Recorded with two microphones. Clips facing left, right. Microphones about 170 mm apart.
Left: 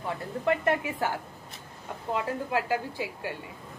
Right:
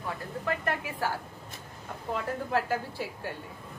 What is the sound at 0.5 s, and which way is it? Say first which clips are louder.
Speech: left 6 dB; 20° left (ahead or behind).